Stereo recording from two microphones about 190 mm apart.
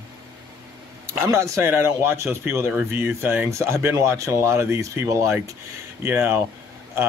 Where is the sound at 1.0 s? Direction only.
15° right (ahead or behind).